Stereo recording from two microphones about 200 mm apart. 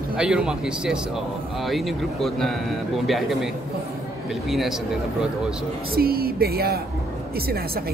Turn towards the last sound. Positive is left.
turn(degrees=-50)  # may be behind; listen again after turning